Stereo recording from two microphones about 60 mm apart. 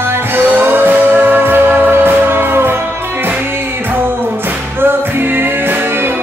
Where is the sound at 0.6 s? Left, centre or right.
Right.